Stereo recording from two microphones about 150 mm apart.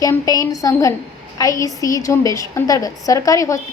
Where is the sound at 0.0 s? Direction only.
25° left (ahead or behind).